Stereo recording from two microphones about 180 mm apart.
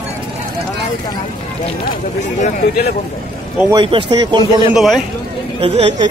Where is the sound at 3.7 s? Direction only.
25° right (ahead or behind).